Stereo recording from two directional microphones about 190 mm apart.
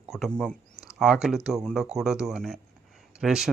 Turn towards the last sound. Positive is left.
turn(degrees=0)  # may be behind; listen again after turning